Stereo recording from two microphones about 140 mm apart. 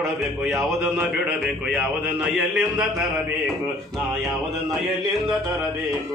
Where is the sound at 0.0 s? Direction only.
20° right (ahead or behind).